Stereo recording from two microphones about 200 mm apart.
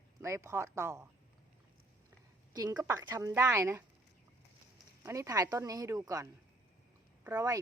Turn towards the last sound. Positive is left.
turn(degrees=-15)  # may be behind; listen again after turning